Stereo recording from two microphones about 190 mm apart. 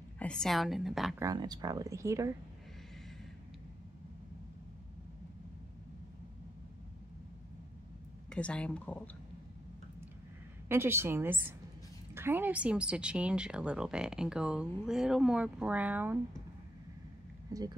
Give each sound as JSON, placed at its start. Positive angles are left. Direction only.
{"t": 0.2, "sound": "a woman's voice", "side_deg": 5}
{"t": 1.2, "sound": "speech", "side_deg": -20}
{"t": 8.3, "sound": "speech", "side_deg": 5}
{"t": 10.7, "sound": "a woman's voice", "side_deg": -10}
{"t": 17.5, "sound": "speech", "side_deg": -20}